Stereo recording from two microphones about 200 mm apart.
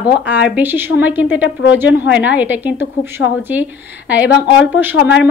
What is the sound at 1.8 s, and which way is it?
Speech, 60° left (ahead or behind).